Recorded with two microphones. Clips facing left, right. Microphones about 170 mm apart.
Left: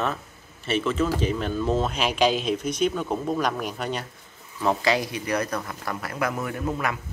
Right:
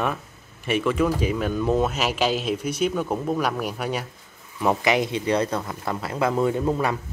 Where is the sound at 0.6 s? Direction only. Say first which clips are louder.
Right 2 dB; 10° right (ahead or behind); by 7.0 s 30° right (ahead or behind).